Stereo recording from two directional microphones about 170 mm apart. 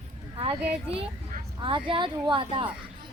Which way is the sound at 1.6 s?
30° right (ahead or behind).